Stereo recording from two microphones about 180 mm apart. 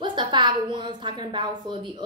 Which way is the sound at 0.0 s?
25° right (ahead or behind).